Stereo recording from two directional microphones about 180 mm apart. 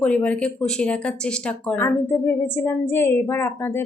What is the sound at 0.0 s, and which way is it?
Speech, 5° left (ahead or behind).